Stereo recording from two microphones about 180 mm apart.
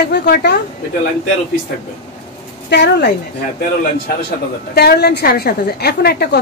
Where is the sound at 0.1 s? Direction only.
65° left (ahead or behind).